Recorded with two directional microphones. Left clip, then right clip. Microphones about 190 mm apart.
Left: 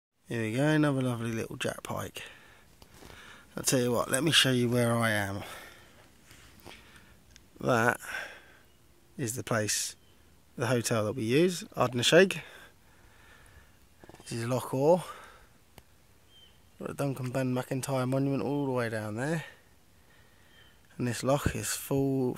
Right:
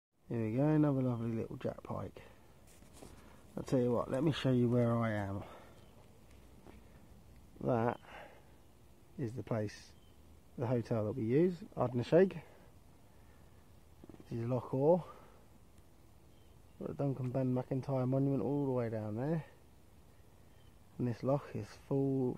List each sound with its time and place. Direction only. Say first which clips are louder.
0.3 s speech: left 5 dB; 25° left (ahead or behind)
3.6 s speech: left 5 dB; 20° left (ahead or behind)
7.6 s speech: left 8 dB; 25° left (ahead or behind)
14.2 s speech: left 6 dB; 25° left (ahead or behind)
16.8 s speech: left 5 dB; 30° left (ahead or behind)
21.0 s speech: left 7 dB; 25° left (ahead or behind)